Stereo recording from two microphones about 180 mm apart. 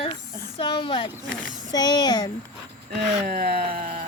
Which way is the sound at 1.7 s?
20° left (ahead or behind).